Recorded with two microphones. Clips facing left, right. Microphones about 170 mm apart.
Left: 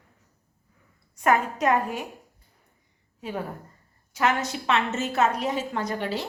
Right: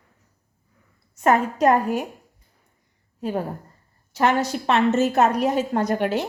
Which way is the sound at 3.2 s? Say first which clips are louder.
Right 6 dB; 40° right (ahead or behind).